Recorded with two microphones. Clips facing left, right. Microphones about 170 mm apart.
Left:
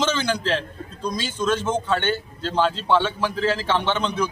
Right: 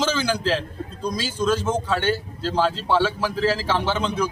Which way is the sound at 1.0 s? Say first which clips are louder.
Even; 35° right (ahead or behind).